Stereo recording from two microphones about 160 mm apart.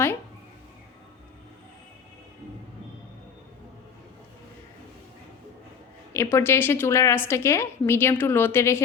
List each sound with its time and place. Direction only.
6.1 s a woman's voice: 15° left (ahead or behind)